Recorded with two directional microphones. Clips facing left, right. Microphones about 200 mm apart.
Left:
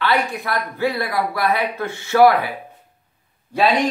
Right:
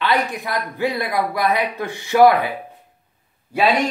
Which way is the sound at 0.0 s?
15° right (ahead or behind).